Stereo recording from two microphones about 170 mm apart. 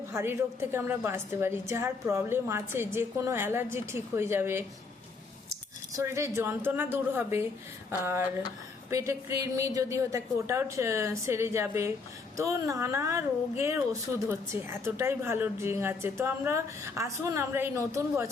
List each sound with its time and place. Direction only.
0.1 s a woman's voice: 15° right (ahead or behind)
6.0 s a woman's voice: 15° right (ahead or behind)